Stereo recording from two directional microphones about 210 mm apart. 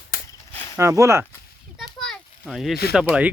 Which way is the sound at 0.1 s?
45° left (ahead or behind).